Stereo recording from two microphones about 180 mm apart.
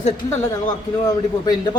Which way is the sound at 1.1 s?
20° left (ahead or behind).